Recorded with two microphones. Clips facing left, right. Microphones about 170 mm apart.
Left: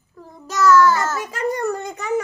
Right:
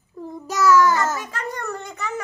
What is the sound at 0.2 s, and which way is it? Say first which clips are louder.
Child singing: right 8 dB; 20° right (ahead or behind).